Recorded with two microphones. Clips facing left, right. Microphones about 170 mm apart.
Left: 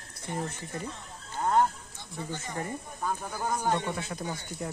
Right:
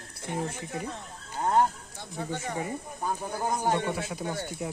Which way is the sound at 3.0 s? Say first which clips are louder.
Right 2 dB; 30° right (ahead or behind).